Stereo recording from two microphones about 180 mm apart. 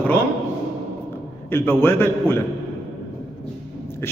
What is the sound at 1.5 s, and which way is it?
Speech, 10° left (ahead or behind).